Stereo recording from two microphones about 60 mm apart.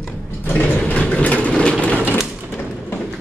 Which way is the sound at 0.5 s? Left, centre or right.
Left.